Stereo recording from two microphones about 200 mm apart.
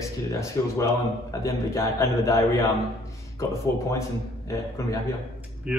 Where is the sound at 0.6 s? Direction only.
15° left (ahead or behind).